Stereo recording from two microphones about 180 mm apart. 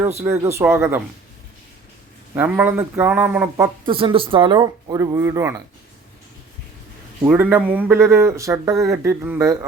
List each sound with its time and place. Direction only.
0.0 s speech: 15° right (ahead or behind)
2.3 s speech: 10° right (ahead or behind)
3.8 s speech: 30° right (ahead or behind)
7.3 s speech: 10° right (ahead or behind)